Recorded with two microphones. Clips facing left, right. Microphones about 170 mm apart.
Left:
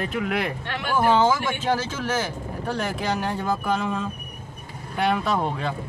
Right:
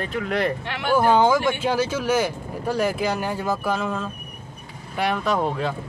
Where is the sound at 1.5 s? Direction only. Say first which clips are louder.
Right 3 dB; 10° right (ahead or behind).